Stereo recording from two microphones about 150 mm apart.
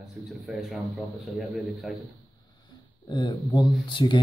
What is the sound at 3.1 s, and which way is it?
Speech, 30° left (ahead or behind).